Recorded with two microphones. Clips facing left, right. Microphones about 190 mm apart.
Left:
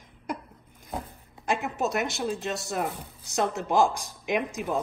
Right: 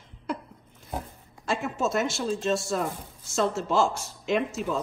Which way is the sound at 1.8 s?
20° left (ahead or behind).